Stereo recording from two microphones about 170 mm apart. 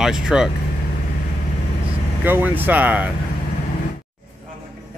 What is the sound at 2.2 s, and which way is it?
Speech, 10° right (ahead or behind).